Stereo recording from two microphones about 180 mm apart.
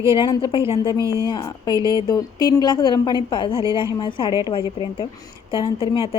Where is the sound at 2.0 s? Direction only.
25° left (ahead or behind).